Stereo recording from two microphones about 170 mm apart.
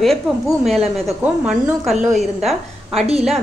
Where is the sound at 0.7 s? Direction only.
Centre (ahead or behind).